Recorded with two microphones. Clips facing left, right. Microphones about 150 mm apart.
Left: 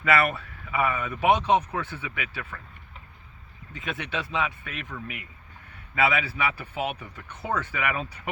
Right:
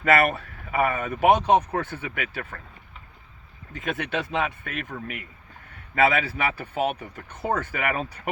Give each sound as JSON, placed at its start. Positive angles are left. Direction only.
{"t": 0.0, "sound": "speech", "side_deg": -45}
{"t": 3.7, "sound": "speech", "side_deg": -50}